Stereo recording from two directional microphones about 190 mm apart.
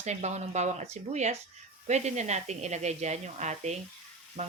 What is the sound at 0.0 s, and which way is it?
Speech, 35° right (ahead or behind).